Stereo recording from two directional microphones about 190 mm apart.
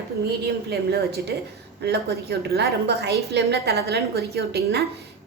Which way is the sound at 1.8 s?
55° right (ahead or behind).